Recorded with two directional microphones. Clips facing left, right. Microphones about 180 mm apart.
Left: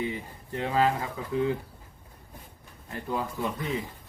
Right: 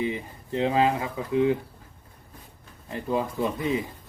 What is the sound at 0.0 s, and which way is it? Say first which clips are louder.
Speech: right 3 dB; 20° right (ahead or behind).